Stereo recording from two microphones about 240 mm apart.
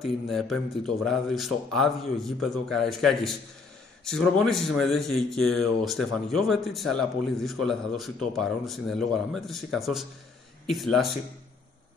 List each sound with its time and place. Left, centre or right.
0.0 s speech: centre